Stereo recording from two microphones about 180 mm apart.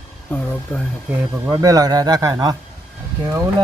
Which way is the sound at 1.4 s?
15° right (ahead or behind).